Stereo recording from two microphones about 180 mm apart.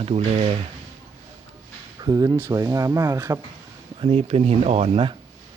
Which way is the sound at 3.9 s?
30° right (ahead or behind).